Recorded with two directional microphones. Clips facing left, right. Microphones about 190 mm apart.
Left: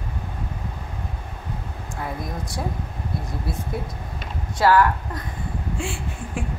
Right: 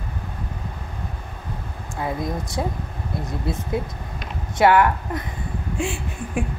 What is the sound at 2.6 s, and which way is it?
Speech, 20° right (ahead or behind).